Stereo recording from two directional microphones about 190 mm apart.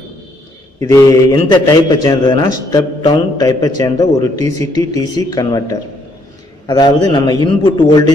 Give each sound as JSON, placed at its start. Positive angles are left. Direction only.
{"t": 0.7, "sound": "a man's voice", "side_deg": 15}
{"t": 7.1, "sound": "a man's voice", "side_deg": 20}